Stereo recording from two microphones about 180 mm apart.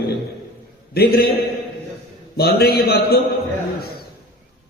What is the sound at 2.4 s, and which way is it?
Speech, 60° left (ahead or behind).